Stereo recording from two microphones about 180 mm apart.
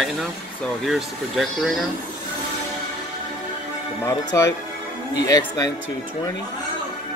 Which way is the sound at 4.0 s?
15° left (ahead or behind).